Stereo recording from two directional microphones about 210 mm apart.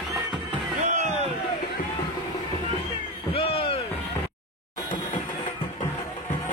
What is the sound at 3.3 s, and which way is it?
Music, 25° left (ahead or behind).